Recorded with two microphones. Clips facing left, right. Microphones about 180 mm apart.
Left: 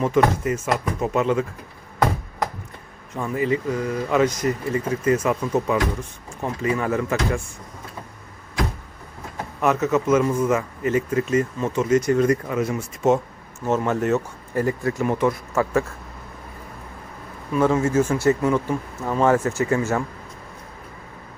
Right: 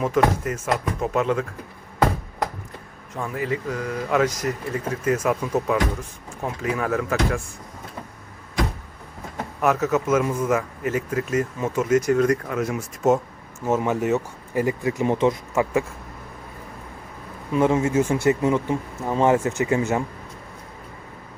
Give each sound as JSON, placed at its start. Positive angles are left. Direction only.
{"t": 0.0, "sound": "speech", "side_deg": 0}
{"t": 3.2, "sound": "speech", "side_deg": 0}
{"t": 9.6, "sound": "speech", "side_deg": -5}
{"t": 17.5, "sound": "speech", "side_deg": -20}